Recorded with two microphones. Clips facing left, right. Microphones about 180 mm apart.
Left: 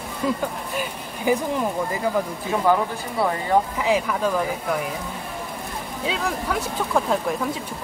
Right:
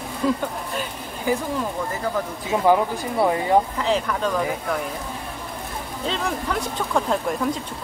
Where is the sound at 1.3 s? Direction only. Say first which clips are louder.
Left 2 dB; 15° left (ahead or behind).